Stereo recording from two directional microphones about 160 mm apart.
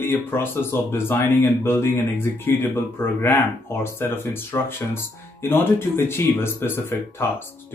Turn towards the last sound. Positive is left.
turn(degrees=15)  # may be behind; listen again after turning